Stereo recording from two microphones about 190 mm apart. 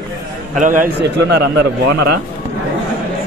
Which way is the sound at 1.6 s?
60° right (ahead or behind).